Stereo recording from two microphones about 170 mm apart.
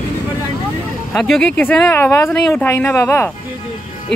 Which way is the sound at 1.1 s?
Centre (ahead or behind).